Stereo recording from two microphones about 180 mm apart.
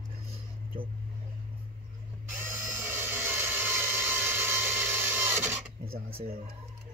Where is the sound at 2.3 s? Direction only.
15° right (ahead or behind).